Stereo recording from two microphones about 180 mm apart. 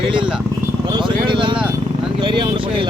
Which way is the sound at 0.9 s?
25° right (ahead or behind).